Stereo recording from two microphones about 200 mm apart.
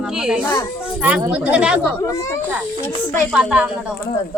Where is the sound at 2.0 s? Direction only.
15° left (ahead or behind).